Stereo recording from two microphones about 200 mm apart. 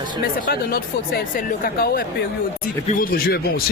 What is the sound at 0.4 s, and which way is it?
Speech, 50° left (ahead or behind).